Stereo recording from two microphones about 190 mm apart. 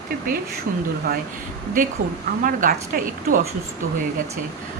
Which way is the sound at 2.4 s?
50° right (ahead or behind).